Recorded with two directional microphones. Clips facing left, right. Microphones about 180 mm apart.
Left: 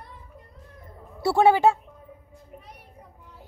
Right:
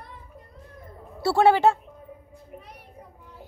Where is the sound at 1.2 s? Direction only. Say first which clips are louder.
Even; 15° left (ahead or behind).